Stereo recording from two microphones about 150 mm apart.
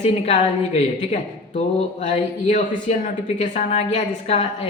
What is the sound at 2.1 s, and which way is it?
A woman's voice, 55° left (ahead or behind).